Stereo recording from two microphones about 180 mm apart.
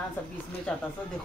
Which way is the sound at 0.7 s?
5° left (ahead or behind).